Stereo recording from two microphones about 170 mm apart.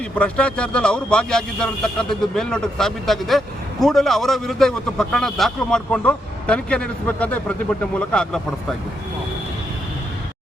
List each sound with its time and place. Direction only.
0.2 s a man's voice: 5° left (ahead or behind)